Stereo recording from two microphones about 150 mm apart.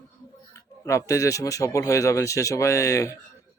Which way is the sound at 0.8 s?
20° left (ahead or behind).